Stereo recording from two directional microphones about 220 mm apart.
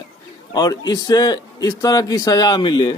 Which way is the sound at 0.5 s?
20° left (ahead or behind).